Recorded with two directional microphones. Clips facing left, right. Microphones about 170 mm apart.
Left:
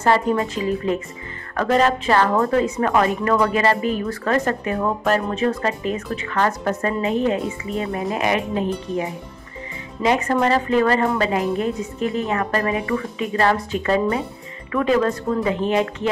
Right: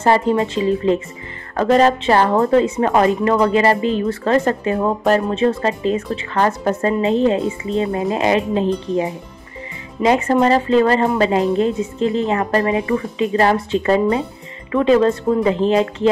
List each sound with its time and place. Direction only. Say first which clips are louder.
0.0 s a woman's voice: right 3 dB; 25° right (ahead or behind)
10.0 s a woman's voice: right 4 dB; 25° right (ahead or behind)